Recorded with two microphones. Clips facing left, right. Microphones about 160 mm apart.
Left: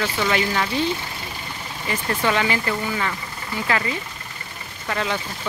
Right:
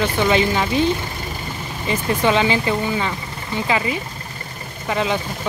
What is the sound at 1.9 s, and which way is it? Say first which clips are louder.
Speech: right 4 dB; 20° right (ahead or behind).